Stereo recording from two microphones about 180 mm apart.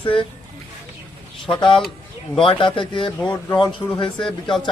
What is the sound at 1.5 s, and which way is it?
A man's voice, 25° left (ahead or behind).